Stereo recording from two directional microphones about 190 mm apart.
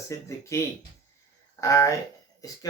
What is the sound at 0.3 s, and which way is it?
Speech, 15° left (ahead or behind).